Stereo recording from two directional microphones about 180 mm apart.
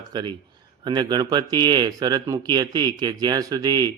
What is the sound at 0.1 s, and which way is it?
A man's voice, 25° right (ahead or behind).